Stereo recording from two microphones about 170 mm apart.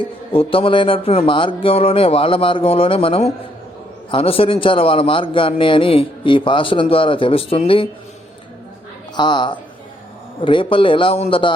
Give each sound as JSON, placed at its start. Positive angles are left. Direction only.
{"t": 0.0, "sound": "a man's voice", "side_deg": 30}
{"t": 9.1, "sound": "a woman's voice", "side_deg": 25}